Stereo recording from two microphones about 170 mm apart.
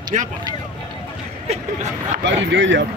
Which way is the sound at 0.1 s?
45° right (ahead or behind).